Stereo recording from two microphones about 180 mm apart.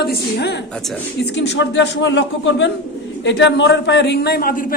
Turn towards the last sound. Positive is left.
turn(degrees=55)  # may be behind; listen again after turning